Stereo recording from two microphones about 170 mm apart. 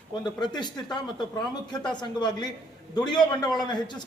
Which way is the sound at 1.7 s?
25° left (ahead or behind).